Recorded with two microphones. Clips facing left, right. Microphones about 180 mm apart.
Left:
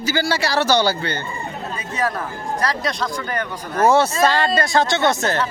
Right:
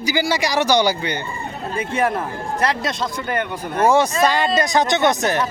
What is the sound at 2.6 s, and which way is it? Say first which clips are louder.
Speech: right 2 dB; 20° right (ahead or behind).